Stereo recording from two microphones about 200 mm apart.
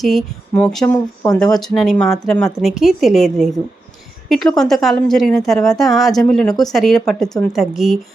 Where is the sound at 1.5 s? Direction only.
Centre (ahead or behind).